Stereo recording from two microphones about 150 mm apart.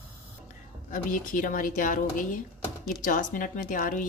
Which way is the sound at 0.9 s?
60° left (ahead or behind).